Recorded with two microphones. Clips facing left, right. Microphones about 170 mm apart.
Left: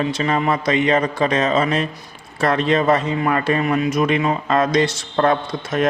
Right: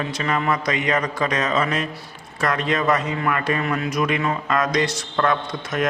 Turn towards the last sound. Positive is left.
turn(degrees=30)  # may be behind; listen again after turning